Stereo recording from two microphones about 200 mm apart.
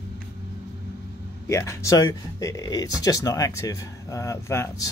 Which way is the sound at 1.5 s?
15° left (ahead or behind).